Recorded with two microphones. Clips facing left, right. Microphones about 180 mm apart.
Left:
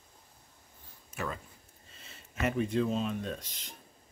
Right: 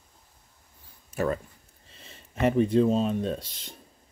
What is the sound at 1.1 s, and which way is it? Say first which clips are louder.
Speech: right 10 dB; 45° right (ahead or behind).